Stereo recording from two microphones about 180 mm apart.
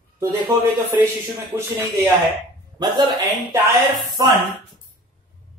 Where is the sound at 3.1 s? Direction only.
Centre (ahead or behind).